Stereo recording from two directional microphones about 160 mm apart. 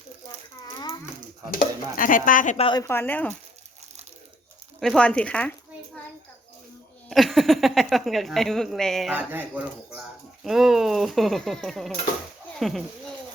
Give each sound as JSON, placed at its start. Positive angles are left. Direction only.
{"t": 1.5, "sound": "dishes", "side_deg": 60}
{"t": 2.6, "sound": "a woman's voice", "side_deg": 30}
{"t": 2.8, "sound": "speech", "side_deg": 15}
{"t": 4.8, "sound": "a child's voice", "side_deg": 5}
{"t": 7.1, "sound": "a woman's voice", "side_deg": 0}